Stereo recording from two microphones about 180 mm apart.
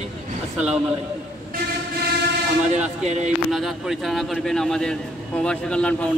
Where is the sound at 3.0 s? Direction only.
40° right (ahead or behind).